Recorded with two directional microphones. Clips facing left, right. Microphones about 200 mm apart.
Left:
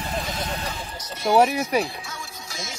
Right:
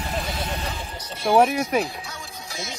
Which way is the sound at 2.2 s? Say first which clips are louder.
Right 2 dB; 20° right (ahead or behind).